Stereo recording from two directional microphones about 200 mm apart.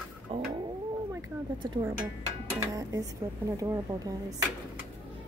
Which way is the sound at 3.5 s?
15° right (ahead or behind).